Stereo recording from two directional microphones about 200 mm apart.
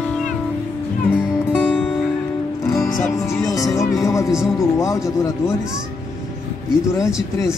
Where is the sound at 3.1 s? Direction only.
15° left (ahead or behind).